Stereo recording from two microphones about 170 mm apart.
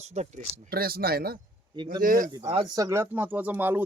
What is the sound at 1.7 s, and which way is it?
Speech, 25° right (ahead or behind).